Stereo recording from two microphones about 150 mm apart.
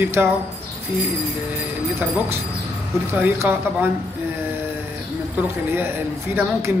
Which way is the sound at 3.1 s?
15° right (ahead or behind).